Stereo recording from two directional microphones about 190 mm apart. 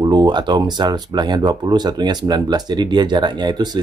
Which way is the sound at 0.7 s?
20° right (ahead or behind).